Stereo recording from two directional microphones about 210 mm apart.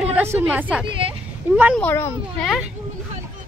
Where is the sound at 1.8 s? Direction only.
10° left (ahead or behind).